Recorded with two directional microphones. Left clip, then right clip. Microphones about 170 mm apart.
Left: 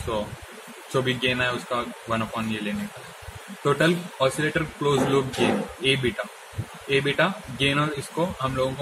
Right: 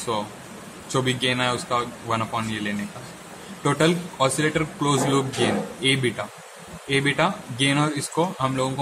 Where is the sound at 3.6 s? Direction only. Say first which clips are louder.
Even; 35° right (ahead or behind).